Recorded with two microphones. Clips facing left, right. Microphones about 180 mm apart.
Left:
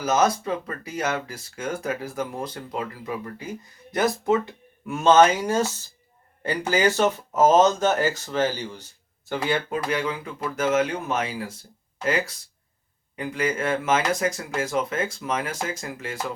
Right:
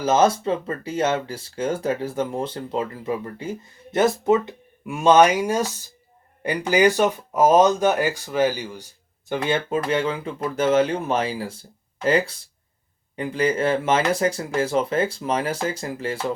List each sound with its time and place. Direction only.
0.0 s speech: 30° right (ahead or behind); by 8.9 s 10° right (ahead or behind)
9.3 s speech: 20° right (ahead or behind)